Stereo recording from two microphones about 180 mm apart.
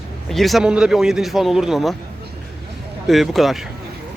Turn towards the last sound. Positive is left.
turn(degrees=0)  # may be behind; listen again after turning